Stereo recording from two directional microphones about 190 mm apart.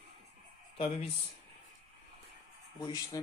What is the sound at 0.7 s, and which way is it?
Speech, 30° left (ahead or behind).